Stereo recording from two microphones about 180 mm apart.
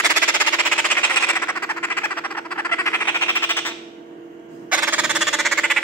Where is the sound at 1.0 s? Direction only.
10° left (ahead or behind).